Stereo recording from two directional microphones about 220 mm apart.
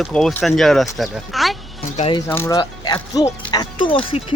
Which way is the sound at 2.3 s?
10° left (ahead or behind).